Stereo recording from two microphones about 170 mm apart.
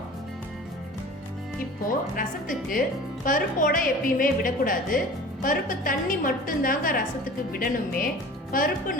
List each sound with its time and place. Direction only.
2.1 s a woman's voice: 55° left (ahead or behind)